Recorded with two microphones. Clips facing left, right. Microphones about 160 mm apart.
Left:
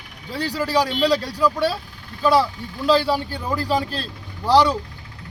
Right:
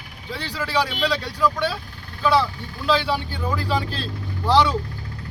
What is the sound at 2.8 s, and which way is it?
A man's voice, 40° left (ahead or behind).